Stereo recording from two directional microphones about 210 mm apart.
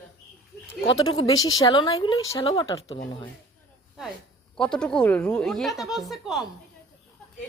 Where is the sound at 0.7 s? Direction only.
25° left (ahead or behind).